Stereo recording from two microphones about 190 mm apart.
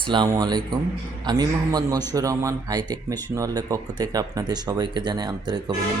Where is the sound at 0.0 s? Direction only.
25° right (ahead or behind).